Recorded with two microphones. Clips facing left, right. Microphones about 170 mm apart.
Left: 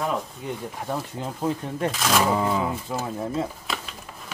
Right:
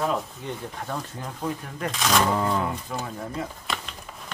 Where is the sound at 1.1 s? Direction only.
25° left (ahead or behind).